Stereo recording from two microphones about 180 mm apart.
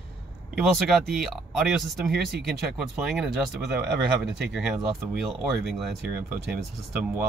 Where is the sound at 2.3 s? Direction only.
65° right (ahead or behind).